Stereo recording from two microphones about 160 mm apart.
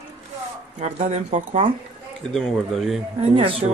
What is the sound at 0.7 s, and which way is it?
Speech, 50° right (ahead or behind).